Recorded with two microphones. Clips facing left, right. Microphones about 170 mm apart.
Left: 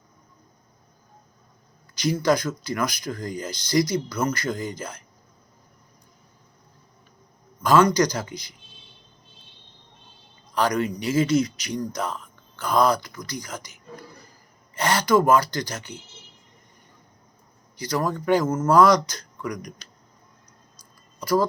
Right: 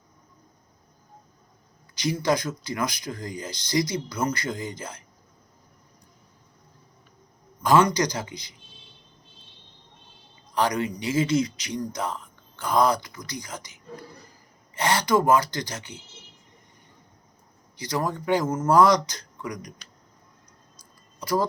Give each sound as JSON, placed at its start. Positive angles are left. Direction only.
{"t": 2.2, "sound": "speech", "side_deg": -20}
{"t": 7.6, "sound": "a man's voice", "side_deg": -15}
{"t": 10.8, "sound": "speech", "side_deg": -20}
{"t": 14.8, "sound": "speech", "side_deg": -20}
{"t": 17.8, "sound": "speech", "side_deg": -20}
{"t": 21.2, "sound": "speech", "side_deg": -20}